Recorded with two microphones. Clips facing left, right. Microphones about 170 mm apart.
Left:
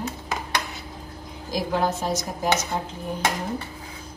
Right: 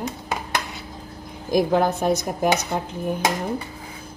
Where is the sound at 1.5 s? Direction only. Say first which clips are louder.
Right 5 dB; 55° right (ahead or behind).